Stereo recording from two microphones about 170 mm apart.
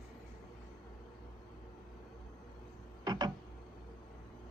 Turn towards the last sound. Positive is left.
turn(degrees=-25)  # may be behind; listen again after turning